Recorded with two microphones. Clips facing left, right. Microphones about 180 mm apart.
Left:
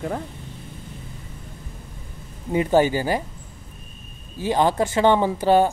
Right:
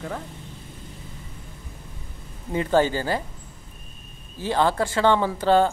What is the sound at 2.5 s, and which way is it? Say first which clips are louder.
Speech: left 3 dB; 15° left (ahead or behind).